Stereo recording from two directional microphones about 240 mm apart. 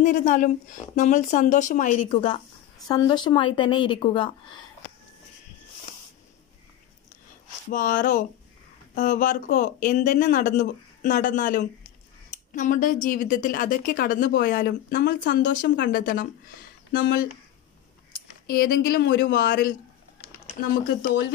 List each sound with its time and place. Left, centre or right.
0.0 s a woman's voice: left
7.7 s a woman's voice: left
18.6 s a woman's voice: left